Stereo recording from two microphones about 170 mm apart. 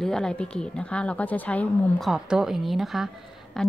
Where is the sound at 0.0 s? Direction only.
5° left (ahead or behind).